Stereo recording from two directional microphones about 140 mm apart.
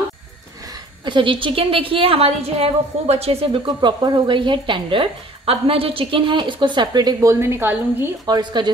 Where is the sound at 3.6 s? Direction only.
30° right (ahead or behind); by 8.3 s 15° right (ahead or behind).